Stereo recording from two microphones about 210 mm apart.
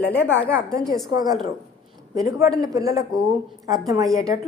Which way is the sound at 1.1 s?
20° right (ahead or behind).